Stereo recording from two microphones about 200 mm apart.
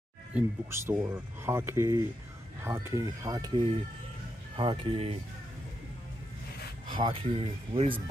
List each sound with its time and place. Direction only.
0.3 s speech: 10° right (ahead or behind); by 5.1 s 25° right (ahead or behind)
7.0 s speech: 25° right (ahead or behind)